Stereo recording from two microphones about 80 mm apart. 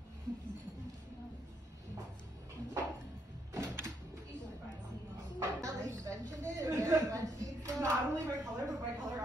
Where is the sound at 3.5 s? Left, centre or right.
Right.